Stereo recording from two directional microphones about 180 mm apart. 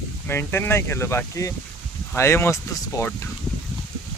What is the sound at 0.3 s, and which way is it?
Speech, 15° left (ahead or behind).